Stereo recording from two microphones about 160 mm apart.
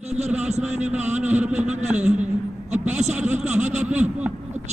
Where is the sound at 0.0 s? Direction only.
45° right (ahead or behind).